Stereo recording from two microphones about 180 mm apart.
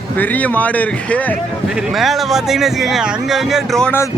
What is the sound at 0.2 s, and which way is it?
Speech, 10° left (ahead or behind).